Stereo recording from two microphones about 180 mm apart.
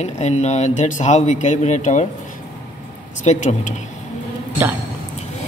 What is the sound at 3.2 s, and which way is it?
Speech, 40° left (ahead or behind).